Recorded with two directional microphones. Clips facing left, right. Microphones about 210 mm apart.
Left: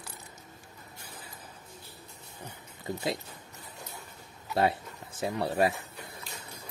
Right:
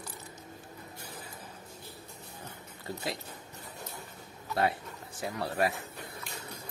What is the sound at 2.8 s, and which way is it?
Speech, 20° left (ahead or behind).